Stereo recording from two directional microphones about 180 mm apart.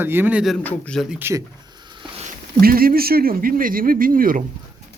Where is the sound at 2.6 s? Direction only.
55° right (ahead or behind).